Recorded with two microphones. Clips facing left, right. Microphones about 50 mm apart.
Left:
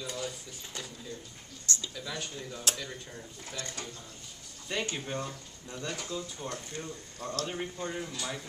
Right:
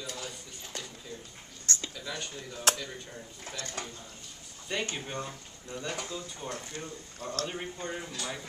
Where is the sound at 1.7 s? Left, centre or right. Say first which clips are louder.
Right 1 dB; right.